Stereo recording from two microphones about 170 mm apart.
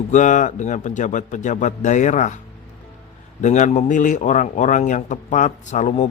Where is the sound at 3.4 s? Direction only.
45° left (ahead or behind).